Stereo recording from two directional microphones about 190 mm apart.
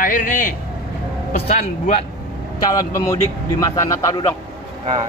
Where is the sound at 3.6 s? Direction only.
15° left (ahead or behind).